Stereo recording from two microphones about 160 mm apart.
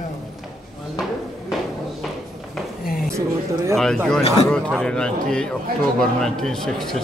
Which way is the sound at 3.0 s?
20° right (ahead or behind).